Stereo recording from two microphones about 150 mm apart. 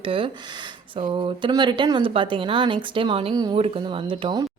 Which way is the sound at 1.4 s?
30° right (ahead or behind).